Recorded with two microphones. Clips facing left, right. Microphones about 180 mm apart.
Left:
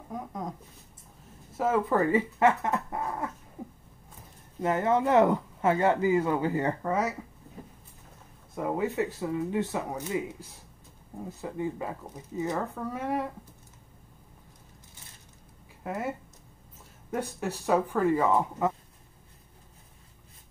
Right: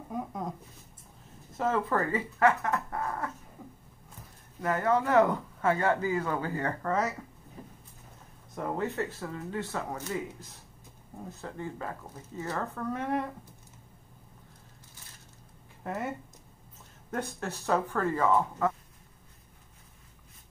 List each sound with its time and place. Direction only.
0.1 s speech: 5° right (ahead or behind)
1.6 s speech: 10° left (ahead or behind)
4.6 s speech: 20° left (ahead or behind)
8.5 s speech: 10° left (ahead or behind)
11.4 s speech: 15° left (ahead or behind)
15.8 s speech: 5° left (ahead or behind)
17.1 s speech: 10° left (ahead or behind)